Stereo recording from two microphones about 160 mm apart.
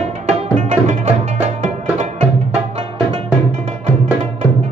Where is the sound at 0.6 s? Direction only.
45° right (ahead or behind).